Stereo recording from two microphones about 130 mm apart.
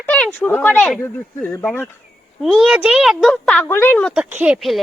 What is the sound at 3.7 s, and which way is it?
Speech, 15° left (ahead or behind).